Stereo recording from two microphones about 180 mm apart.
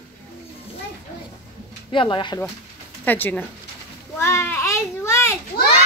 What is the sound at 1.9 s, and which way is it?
Speech, 30° left (ahead or behind).